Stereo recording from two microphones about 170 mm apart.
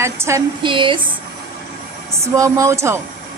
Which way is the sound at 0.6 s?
30° right (ahead or behind).